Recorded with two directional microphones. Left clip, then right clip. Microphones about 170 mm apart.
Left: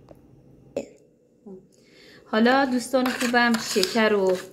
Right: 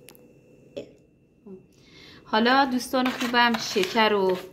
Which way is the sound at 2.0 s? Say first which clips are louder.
Left 1 dB; 20° right (ahead or behind).